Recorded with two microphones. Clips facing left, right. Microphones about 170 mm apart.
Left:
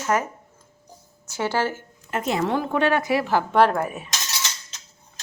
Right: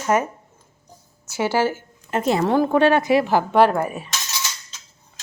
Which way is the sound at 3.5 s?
Centre (ahead or behind).